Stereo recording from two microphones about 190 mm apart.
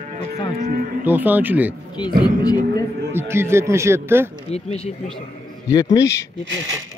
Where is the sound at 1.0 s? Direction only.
10° right (ahead or behind).